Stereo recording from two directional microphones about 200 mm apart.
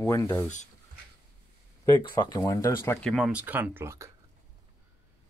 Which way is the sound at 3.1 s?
5° right (ahead or behind).